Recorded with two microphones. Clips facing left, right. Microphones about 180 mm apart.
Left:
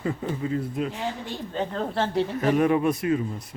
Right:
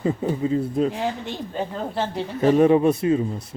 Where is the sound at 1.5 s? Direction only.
5° right (ahead or behind).